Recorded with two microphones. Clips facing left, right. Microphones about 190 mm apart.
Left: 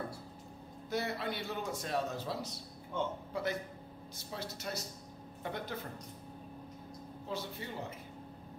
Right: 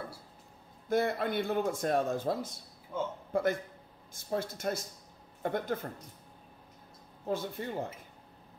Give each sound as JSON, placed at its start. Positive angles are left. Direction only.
{"t": 0.8, "sound": "speech", "side_deg": -50}
{"t": 2.9, "sound": "a man's voice", "side_deg": -5}
{"t": 3.3, "sound": "speech", "side_deg": -50}
{"t": 7.2, "sound": "speech", "side_deg": -50}